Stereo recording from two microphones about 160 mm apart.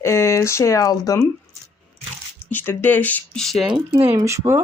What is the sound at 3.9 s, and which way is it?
Speech, 20° right (ahead or behind).